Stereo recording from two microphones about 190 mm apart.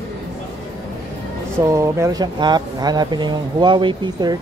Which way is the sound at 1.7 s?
15° right (ahead or behind).